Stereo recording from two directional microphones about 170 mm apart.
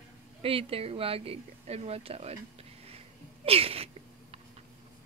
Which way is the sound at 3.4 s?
35° right (ahead or behind).